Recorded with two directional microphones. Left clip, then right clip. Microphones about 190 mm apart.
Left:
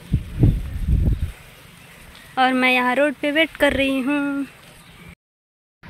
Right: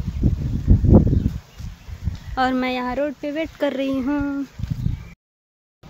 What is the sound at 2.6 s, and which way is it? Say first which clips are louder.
Speech: left 7 dB; centre (ahead or behind).